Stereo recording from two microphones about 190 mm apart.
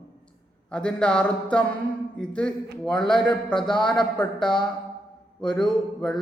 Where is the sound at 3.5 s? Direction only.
25° left (ahead or behind).